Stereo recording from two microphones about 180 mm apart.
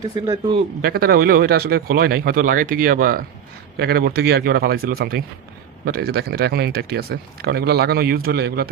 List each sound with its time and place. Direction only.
0.2 s speech: 25° right (ahead or behind)
0.8 s speech: 55° right (ahead or behind)